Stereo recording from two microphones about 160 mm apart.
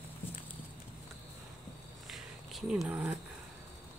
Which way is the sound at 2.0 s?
Centre (ahead or behind).